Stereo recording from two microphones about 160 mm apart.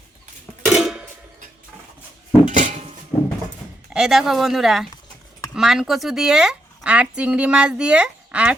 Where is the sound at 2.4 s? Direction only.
50° right (ahead or behind).